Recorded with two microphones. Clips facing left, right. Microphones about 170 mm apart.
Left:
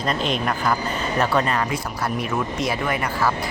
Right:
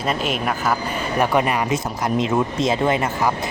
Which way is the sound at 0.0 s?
5° right (ahead or behind).